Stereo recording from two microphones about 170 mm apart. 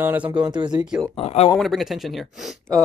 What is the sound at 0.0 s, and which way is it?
Speech, 10° right (ahead or behind).